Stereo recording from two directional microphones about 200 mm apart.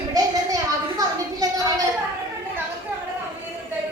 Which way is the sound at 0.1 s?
20° right (ahead or behind).